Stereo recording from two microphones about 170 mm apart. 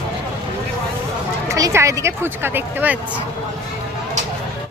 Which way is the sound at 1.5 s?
20° right (ahead or behind).